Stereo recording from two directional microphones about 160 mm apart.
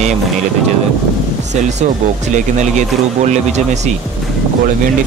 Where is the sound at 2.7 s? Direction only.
45° right (ahead or behind).